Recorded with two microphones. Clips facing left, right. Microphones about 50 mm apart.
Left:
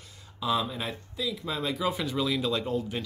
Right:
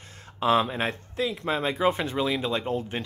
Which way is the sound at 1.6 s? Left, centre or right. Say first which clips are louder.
Right 5 dB; right.